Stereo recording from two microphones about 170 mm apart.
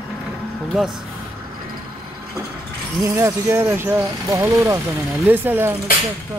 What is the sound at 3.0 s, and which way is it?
Speech, 15° right (ahead or behind).